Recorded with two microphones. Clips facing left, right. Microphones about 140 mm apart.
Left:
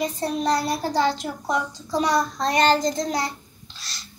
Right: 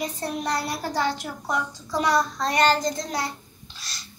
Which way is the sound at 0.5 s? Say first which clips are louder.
Left 4 dB; 30° left (ahead or behind).